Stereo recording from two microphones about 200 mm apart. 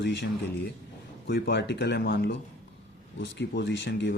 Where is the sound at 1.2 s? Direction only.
50° left (ahead or behind).